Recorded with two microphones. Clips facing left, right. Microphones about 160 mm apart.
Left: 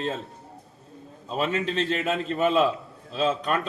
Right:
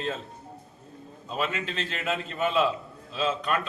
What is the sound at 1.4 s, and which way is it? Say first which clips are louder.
A man's voice: left 5 dB; 35° left (ahead or behind).